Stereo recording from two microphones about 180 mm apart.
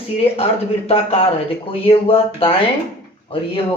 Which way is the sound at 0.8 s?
35° left (ahead or behind).